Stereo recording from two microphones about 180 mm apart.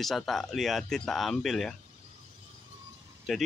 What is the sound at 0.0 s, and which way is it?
Speech, centre (ahead or behind).